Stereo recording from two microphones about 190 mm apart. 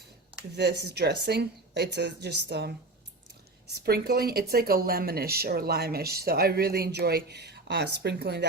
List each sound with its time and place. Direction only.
0.5 s speech: 60° right (ahead or behind)